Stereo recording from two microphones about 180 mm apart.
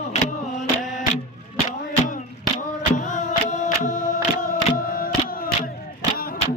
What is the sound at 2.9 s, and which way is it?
Music, 45° left (ahead or behind).